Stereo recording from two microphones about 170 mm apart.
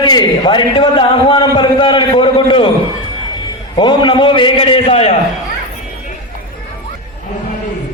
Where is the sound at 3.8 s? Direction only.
25° left (ahead or behind).